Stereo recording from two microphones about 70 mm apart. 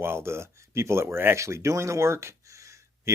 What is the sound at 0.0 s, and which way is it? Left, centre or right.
Speech, right.